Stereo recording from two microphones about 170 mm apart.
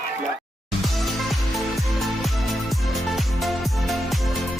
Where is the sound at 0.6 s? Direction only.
Centre (ahead or behind).